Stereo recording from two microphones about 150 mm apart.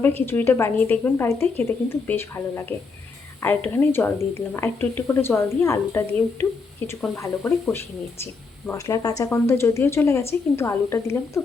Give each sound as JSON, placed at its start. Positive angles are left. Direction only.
{"t": 0.0, "sound": "a woman's voice", "side_deg": 15}